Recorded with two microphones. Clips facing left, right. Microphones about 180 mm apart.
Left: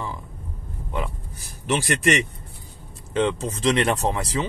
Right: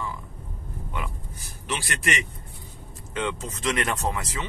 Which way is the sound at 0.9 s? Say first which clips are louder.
Left 6 dB; 35° left (ahead or behind).